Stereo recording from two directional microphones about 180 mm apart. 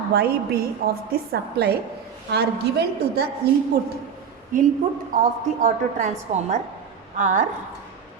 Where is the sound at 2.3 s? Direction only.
65° right (ahead or behind).